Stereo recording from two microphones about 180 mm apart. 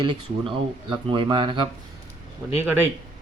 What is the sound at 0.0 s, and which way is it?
Speech, 30° right (ahead or behind).